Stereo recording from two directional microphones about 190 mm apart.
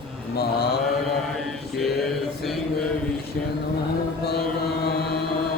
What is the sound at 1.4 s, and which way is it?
Mantra, centre (ahead or behind).